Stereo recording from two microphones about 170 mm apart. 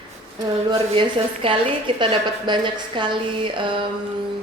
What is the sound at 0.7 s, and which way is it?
A woman's voice, 30° right (ahead or behind).